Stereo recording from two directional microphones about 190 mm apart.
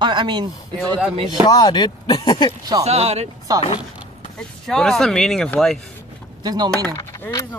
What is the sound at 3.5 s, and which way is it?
Speech, 20° right (ahead or behind).